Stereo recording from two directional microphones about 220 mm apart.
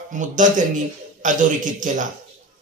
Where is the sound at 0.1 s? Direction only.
35° right (ahead or behind).